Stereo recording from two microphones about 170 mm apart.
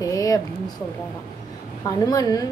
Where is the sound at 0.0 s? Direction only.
20° left (ahead or behind).